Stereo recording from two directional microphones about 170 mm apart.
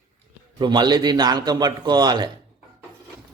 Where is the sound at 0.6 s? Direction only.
25° right (ahead or behind).